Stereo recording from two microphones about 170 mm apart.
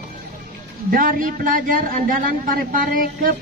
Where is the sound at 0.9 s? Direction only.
55° right (ahead or behind).